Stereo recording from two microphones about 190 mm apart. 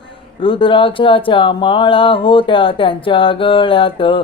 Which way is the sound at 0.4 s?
25° left (ahead or behind).